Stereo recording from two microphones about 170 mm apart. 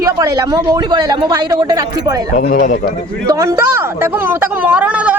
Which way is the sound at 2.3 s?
55° left (ahead or behind).